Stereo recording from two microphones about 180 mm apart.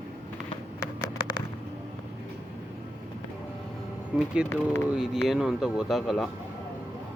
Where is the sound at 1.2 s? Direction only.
25° left (ahead or behind).